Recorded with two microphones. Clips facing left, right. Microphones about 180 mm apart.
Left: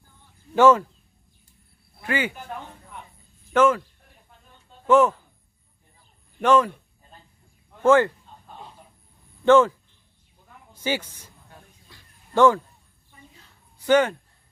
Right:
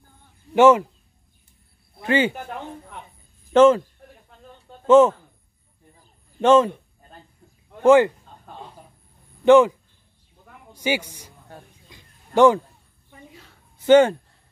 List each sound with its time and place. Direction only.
0.6 s a man's voice: 20° right (ahead or behind)
2.0 s speech: 25° right (ahead or behind)
3.5 s a man's voice: 25° right (ahead or behind)
4.8 s speech: 25° right (ahead or behind)
6.4 s a man's voice: 25° right (ahead or behind)
7.8 s speech: 15° right (ahead or behind)
9.4 s a woman's voice: 15° right (ahead or behind)
11.9 s a sound: 15° right (ahead or behind)
12.4 s a man's voice: 20° right (ahead or behind)
13.8 s a man's voice: 25° right (ahead or behind)